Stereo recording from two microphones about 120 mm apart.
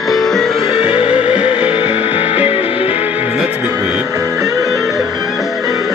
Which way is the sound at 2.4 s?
55° left (ahead or behind).